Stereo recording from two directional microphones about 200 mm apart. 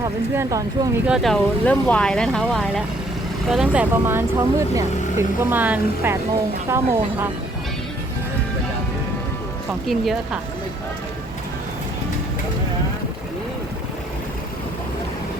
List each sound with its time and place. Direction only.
0.0 s speech: 15° right (ahead or behind)
1.0 s speech: centre (ahead or behind)
9.8 s speech: centre (ahead or behind)